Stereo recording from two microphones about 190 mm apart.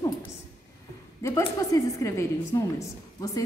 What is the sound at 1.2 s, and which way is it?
A woman's voice, 20° left (ahead or behind).